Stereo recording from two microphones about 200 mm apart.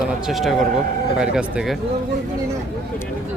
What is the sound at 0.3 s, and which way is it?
Speech, centre (ahead or behind).